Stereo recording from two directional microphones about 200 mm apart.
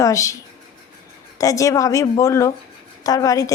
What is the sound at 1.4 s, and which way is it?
Speech, 15° left (ahead or behind).